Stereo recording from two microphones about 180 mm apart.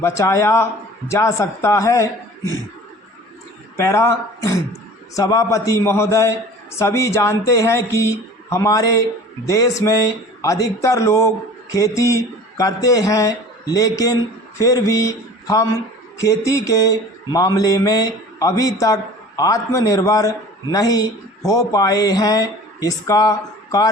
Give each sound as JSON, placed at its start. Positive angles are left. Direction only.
{"t": 0.0, "sound": "a man's voice", "side_deg": 15}
{"t": 3.8, "sound": "a man's voice", "side_deg": 15}